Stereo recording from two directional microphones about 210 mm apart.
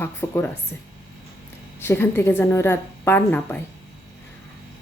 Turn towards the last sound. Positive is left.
turn(degrees=10)  # may be behind; listen again after turning